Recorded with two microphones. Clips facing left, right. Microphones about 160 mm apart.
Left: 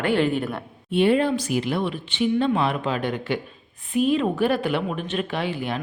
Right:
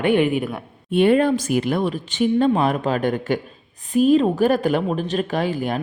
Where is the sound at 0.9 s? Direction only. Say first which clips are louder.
Right 3 dB; 50° right (ahead or behind).